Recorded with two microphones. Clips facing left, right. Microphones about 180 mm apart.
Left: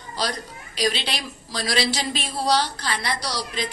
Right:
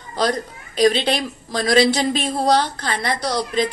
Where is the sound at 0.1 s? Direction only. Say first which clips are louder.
Right 7 dB; 50° right (ahead or behind).